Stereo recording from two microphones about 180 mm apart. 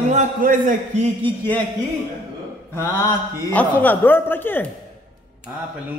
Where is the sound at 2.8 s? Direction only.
15° left (ahead or behind).